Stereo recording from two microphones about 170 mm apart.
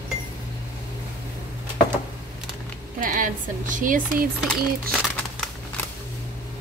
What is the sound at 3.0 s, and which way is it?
Speech, 55° right (ahead or behind).